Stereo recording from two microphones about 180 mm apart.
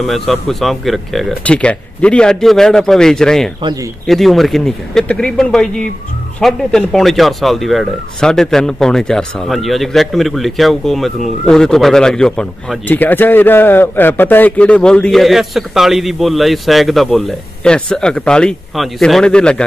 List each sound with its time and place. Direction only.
0.0 s speech: centre (ahead or behind)